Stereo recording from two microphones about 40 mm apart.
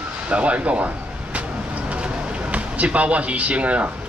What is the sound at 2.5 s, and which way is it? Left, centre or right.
Speech, right.